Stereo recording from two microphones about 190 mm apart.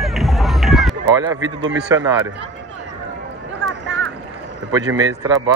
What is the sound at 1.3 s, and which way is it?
Speech, 85° right.